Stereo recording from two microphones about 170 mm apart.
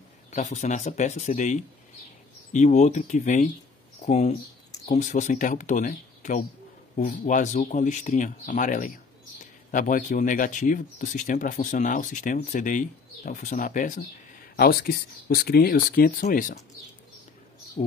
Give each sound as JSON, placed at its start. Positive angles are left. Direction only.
{"t": 0.3, "sound": "speech", "side_deg": 45}
{"t": 14.6, "sound": "speech", "side_deg": 65}
{"t": 17.8, "sound": "speech", "side_deg": 30}